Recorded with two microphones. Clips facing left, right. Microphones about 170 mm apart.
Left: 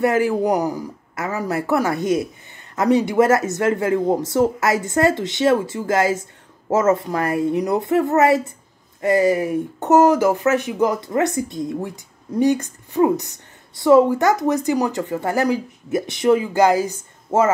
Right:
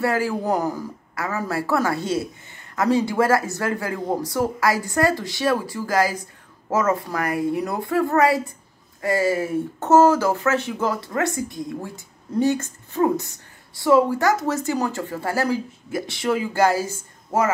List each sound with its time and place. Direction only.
0.0 s a man's voice: 20° left (ahead or behind)